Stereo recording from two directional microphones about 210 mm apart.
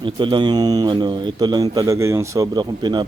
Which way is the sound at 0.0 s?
20° right (ahead or behind).